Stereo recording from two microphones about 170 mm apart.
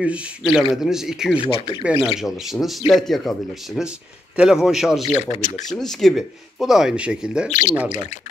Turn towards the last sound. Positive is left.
turn(degrees=45)  # may be behind; listen again after turning